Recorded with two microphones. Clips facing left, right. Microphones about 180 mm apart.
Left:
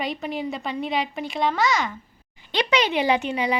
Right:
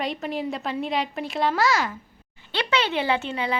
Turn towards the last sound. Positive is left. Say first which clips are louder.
# left 3 dB
turn(degrees=15)  # may be behind; listen again after turning